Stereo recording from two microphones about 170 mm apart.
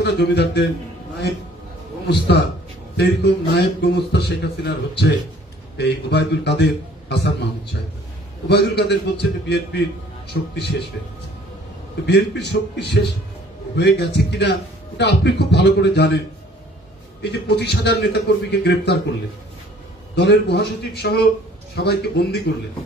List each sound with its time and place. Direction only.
0.0 s a man's voice: 80° left
2.0 s a man's voice: 85° left
8.5 s a man's voice: 75° left (ahead or behind)
12.1 s a man's voice: 85° left
17.2 s a man's voice: 80° left
20.2 s a man's voice: 85° left